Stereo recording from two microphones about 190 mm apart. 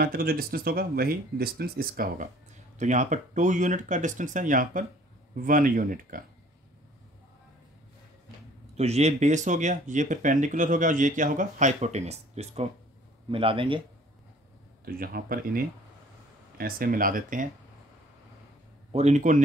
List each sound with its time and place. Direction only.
0.0 s speech: 50° right (ahead or behind)
8.7 s speech: 35° right (ahead or behind)
14.9 s speech: 50° right (ahead or behind)
18.9 s speech: 35° right (ahead or behind)